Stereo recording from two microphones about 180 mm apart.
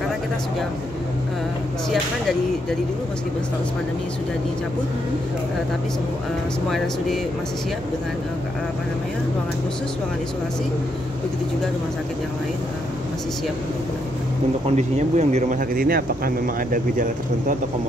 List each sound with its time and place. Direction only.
1.9 s speech: centre (ahead or behind)
14.8 s speech: 40° right (ahead or behind)